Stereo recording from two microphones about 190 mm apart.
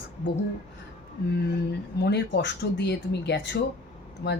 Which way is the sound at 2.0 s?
60° left (ahead or behind).